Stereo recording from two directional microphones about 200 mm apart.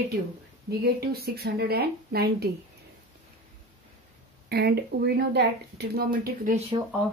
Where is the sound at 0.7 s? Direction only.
50° right (ahead or behind).